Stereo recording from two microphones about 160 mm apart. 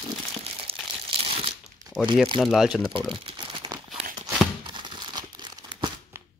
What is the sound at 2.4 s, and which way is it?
Speech, 5° right (ahead or behind).